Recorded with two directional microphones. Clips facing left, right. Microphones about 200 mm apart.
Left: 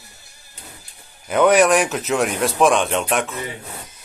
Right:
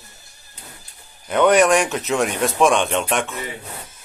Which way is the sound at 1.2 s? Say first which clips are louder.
Even; centre (ahead or behind).